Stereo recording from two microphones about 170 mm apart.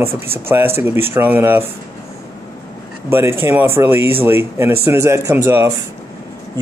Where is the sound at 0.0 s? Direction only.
15° right (ahead or behind).